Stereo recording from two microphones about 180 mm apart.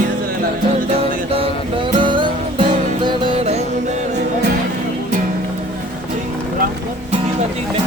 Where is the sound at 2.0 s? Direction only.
25° right (ahead or behind).